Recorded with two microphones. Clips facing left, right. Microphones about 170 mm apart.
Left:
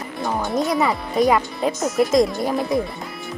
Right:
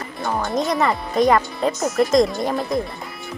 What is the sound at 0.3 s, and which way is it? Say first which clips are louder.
Speech: even; 5° left (ahead or behind).